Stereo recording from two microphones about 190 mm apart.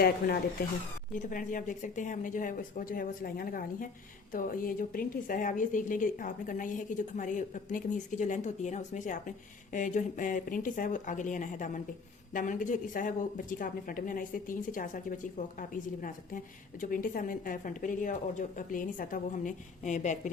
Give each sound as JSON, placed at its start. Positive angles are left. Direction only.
{"t": 1.2, "sound": "a woman's voice", "side_deg": 45}